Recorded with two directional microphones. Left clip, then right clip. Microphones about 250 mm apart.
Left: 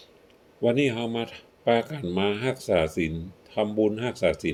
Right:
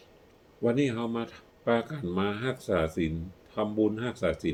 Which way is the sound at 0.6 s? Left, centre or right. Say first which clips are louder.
Left 4 dB; centre.